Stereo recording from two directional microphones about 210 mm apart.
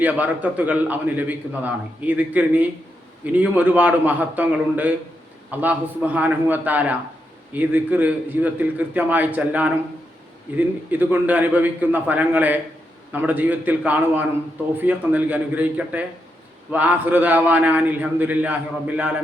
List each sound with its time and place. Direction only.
0.0 s a man's voice: 5° right (ahead or behind)